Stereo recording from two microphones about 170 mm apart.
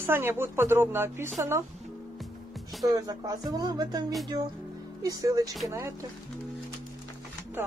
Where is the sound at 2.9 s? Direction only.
20° right (ahead or behind).